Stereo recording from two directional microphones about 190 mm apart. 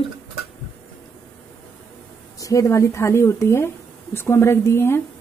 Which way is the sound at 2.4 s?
15° left (ahead or behind).